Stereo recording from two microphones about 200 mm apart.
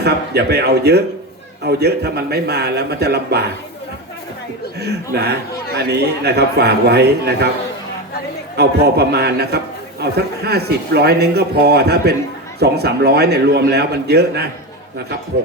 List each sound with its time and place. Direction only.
0.0 s a man's voice: 55° right (ahead or behind)
5.1 s a man's voice: 55° right (ahead or behind)
8.5 s a man's voice: 55° right (ahead or behind)